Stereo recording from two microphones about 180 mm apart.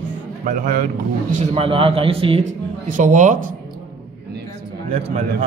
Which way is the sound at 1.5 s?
30° right (ahead or behind).